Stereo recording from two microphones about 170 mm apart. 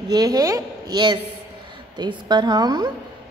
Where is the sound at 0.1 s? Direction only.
25° right (ahead or behind).